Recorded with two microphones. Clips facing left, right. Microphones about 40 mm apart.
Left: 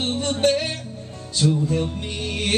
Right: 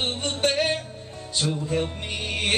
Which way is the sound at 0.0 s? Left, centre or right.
Centre.